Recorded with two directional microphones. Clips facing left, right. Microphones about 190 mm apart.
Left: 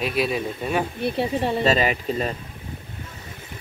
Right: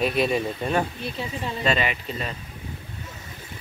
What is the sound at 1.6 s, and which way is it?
Speech, 40° left (ahead or behind).